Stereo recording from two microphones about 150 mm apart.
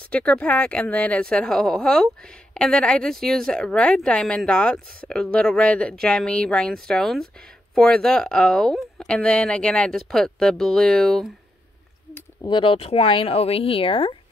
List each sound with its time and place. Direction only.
0.1 s speech: 10° left (ahead or behind)
12.4 s speech: 35° left (ahead or behind)